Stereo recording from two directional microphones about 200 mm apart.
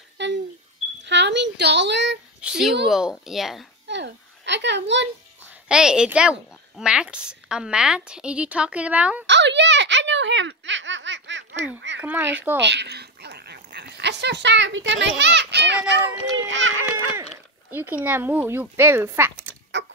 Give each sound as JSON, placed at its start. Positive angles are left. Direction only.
{"t": 0.2, "sound": "a sound", "side_deg": -60}
{"t": 2.4, "sound": "a woman's voice", "side_deg": -5}
{"t": 3.8, "sound": "a sound", "side_deg": -60}
{"t": 5.5, "sound": "a woman's voice", "side_deg": -5}
{"t": 9.2, "sound": "baby laughter", "side_deg": -60}
{"t": 12.0, "sound": "speech", "side_deg": -10}
{"t": 12.5, "sound": "speech", "side_deg": -60}
{"t": 17.2, "sound": "speech", "side_deg": -10}
{"t": 19.8, "sound": "clock", "side_deg": -65}